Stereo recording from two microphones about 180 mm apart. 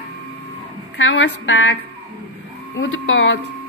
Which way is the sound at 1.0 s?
90° left.